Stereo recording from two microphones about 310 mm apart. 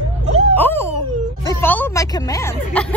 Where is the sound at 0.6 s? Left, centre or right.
Centre.